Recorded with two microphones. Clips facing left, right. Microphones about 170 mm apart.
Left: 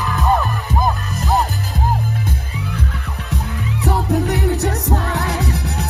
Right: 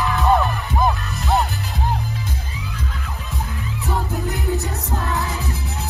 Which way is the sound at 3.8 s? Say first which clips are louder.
Left 7 dB; 75° left (ahead or behind).